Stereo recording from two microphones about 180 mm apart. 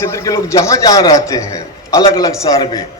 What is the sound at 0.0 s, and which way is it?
A man's voice, 15° left (ahead or behind).